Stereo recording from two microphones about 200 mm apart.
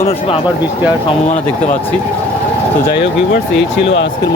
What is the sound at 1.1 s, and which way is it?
Speech, 35° left (ahead or behind).